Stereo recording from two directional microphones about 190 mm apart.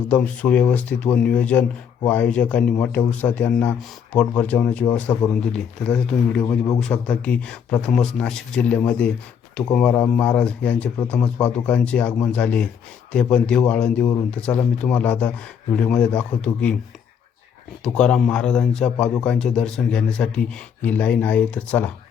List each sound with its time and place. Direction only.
0.1 s a man's voice: 5° left (ahead or behind)
6.4 s a man's voice: 15° left (ahead or behind)
6.7 s a man's voice: 5° left (ahead or behind)
17.8 s speech: 5° left (ahead or behind)